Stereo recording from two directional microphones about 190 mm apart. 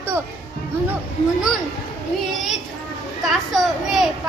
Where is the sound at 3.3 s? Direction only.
Centre (ahead or behind).